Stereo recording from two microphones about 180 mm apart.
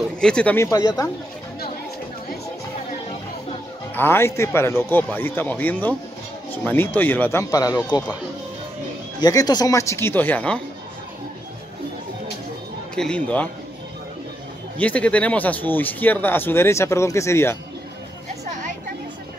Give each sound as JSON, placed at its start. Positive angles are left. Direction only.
{"t": 0.2, "sound": "speech", "side_deg": 5}
{"t": 3.9, "sound": "speech", "side_deg": 10}
{"t": 9.2, "sound": "speech", "side_deg": 20}
{"t": 12.9, "sound": "speech", "side_deg": 5}
{"t": 14.8, "sound": "speech", "side_deg": 5}